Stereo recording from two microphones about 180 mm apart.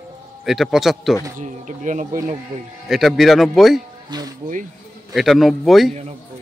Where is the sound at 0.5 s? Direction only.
Centre (ahead or behind).